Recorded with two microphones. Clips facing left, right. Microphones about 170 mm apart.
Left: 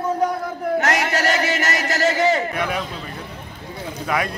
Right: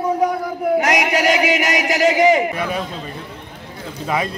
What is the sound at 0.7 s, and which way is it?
A man's voice, 15° right (ahead or behind).